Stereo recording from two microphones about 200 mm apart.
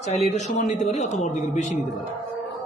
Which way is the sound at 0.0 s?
35° left (ahead or behind).